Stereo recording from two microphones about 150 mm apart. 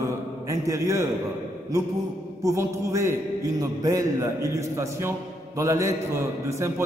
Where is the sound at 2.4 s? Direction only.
20° right (ahead or behind).